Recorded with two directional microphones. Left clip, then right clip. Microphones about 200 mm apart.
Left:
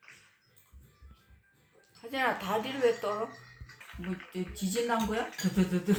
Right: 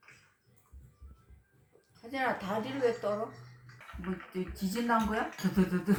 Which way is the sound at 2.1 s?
35° left (ahead or behind).